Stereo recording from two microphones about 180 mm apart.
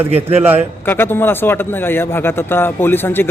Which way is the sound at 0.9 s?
10° left (ahead or behind).